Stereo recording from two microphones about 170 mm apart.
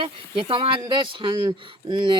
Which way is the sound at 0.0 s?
30° right (ahead or behind).